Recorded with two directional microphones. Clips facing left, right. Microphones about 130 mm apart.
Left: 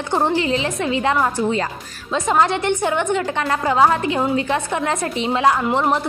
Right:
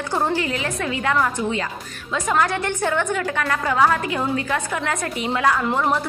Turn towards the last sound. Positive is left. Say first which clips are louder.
# left 3 dB
turn(degrees=20)  # may be behind; listen again after turning